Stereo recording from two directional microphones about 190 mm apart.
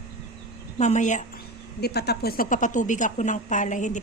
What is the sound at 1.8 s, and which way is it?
A woman's voice, 60° left (ahead or behind).